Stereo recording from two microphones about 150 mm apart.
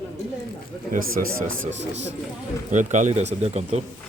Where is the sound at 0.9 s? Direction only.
70° right (ahead or behind).